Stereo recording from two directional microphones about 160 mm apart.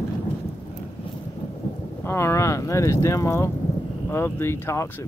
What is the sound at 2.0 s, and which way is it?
Speech, 15° left (ahead or behind).